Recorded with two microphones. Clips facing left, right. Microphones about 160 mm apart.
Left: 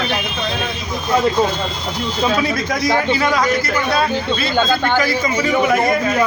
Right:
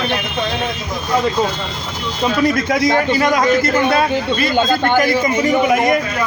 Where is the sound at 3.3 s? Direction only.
25° right (ahead or behind).